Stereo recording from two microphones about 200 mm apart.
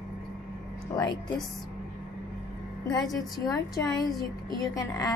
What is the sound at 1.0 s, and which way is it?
Speech, 20° left (ahead or behind).